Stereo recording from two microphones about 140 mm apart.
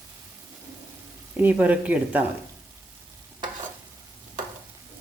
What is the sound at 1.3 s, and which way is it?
Speech, 10° right (ahead or behind).